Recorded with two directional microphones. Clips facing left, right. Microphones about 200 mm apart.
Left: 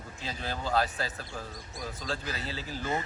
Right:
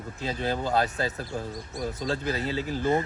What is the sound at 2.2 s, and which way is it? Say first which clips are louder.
Speech: right 9 dB; 55° right (ahead or behind).